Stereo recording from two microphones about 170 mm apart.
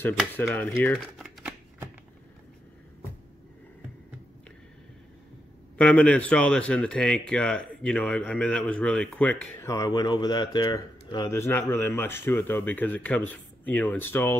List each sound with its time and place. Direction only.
0.4 s speech: 10° left (ahead or behind)
0.9 s shuffling cards: centre (ahead or behind)
5.8 s speech: 5° left (ahead or behind)
9.7 s speech: 20° left (ahead or behind)